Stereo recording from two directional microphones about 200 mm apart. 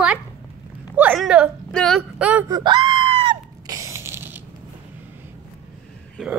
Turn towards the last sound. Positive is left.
turn(degrees=5)  # may be behind; listen again after turning